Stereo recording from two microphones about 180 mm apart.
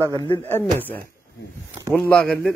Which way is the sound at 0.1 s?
20° left (ahead or behind).